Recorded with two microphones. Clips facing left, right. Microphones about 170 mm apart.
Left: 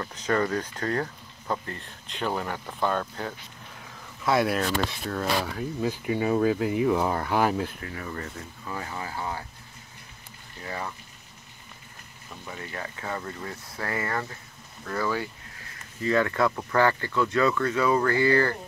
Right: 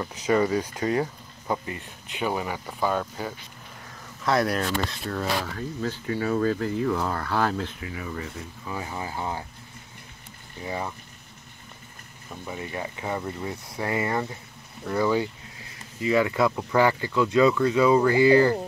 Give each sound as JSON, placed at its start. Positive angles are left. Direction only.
{"t": 0.0, "sound": "speech", "side_deg": -10}
{"t": 5.4, "sound": "speech", "side_deg": 10}
{"t": 7.8, "sound": "speech", "side_deg": -5}
{"t": 10.6, "sound": "speech", "side_deg": -15}
{"t": 12.4, "sound": "speech", "side_deg": -15}